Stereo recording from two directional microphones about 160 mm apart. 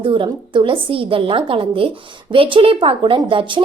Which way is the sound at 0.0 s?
30° right (ahead or behind).